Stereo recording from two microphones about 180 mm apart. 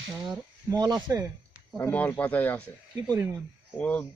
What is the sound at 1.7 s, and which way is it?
Speech, 10° left (ahead or behind).